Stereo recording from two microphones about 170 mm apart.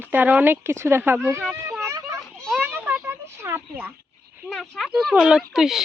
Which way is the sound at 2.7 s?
10° right (ahead or behind).